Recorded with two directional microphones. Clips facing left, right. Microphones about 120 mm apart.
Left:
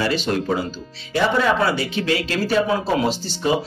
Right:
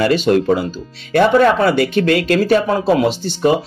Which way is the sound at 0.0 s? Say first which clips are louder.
Right 8 dB; 50° right (ahead or behind).